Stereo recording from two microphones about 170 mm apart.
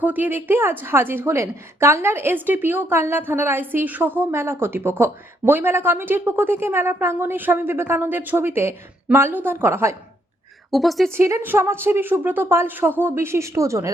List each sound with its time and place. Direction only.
0.0 s a woman's voice: 10° right (ahead or behind)
10.7 s speech: centre (ahead or behind)
11.1 s a woman's voice: 15° right (ahead or behind)